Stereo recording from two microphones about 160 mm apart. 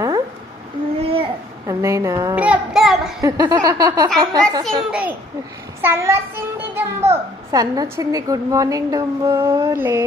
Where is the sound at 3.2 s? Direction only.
25° right (ahead or behind).